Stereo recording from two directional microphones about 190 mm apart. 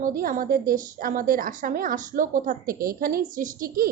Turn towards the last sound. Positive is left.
turn(degrees=-45)  # may be behind; listen again after turning